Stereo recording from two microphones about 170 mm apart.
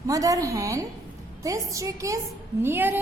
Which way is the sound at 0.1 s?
20° right (ahead or behind).